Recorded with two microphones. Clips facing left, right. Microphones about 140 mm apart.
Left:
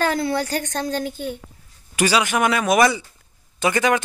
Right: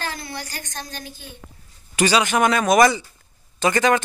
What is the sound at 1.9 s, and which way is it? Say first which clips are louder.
Speech: right 1 dB; 5° left (ahead or behind).